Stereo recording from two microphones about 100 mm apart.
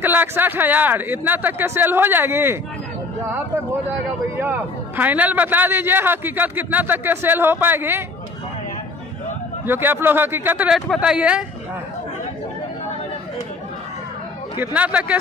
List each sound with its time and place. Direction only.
0.0 s a man's voice: 20° right (ahead or behind)
4.4 s a man's voice: 20° right (ahead or behind)
9.7 s a man's voice: 20° right (ahead or behind)
10.7 s speech: 5° right (ahead or behind)
14.6 s speech: 15° right (ahead or behind)